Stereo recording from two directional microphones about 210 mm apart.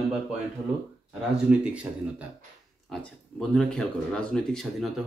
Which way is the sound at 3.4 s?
Centre (ahead or behind).